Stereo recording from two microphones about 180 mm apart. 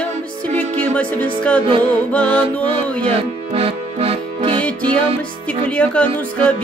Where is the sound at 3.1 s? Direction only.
30° right (ahead or behind).